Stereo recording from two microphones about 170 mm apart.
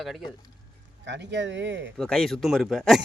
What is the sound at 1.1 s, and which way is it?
Speech, 90° right.